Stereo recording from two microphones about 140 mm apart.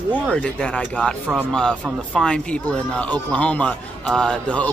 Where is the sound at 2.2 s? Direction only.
5° left (ahead or behind).